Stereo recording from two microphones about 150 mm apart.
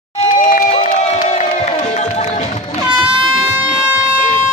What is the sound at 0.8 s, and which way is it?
Music, 45° left (ahead or behind).